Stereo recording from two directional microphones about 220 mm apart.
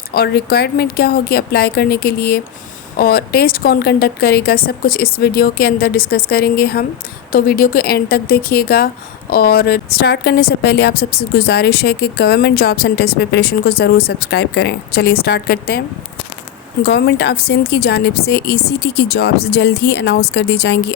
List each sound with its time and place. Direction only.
0.1 s a woman's voice: 45° left (ahead or behind)
16.8 s a woman's voice: 50° left (ahead or behind)